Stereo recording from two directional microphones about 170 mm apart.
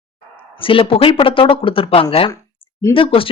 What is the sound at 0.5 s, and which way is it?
A woman's voice, 30° left (ahead or behind).